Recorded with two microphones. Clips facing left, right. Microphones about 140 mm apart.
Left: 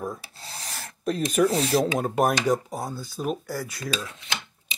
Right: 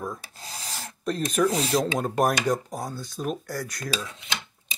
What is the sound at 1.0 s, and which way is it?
Speech, 5° left (ahead or behind).